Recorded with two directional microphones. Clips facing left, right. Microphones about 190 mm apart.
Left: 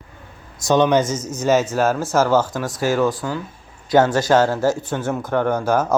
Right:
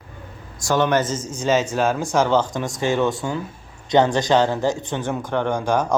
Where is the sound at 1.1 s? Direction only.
10° right (ahead or behind).